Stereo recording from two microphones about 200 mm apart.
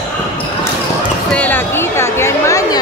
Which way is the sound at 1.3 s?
10° left (ahead or behind).